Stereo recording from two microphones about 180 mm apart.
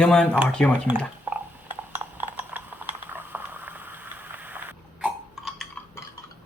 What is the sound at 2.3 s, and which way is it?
Boiling, 10° right (ahead or behind).